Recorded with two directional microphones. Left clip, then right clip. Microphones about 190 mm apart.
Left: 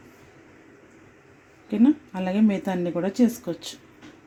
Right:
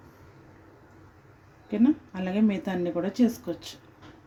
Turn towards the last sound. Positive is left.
turn(degrees=30)  # may be behind; listen again after turning